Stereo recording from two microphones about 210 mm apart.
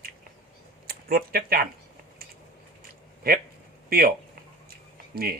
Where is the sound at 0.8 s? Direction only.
45° right (ahead or behind).